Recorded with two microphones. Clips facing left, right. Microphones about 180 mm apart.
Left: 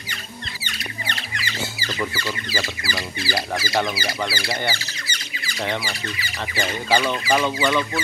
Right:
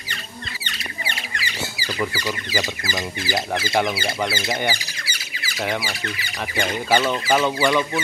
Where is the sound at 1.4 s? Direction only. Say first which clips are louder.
Even; 15° right (ahead or behind).